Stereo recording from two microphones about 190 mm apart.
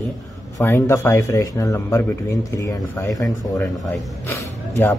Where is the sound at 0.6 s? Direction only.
15° left (ahead or behind).